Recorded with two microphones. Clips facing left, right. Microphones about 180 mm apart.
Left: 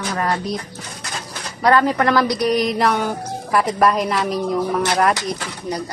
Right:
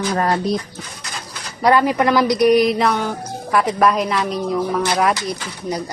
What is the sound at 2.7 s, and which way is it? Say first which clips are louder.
A woman's voice: even; centre (ahead or behind).